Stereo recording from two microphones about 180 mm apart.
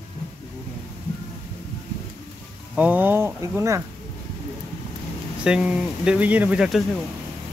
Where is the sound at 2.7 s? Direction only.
10° right (ahead or behind).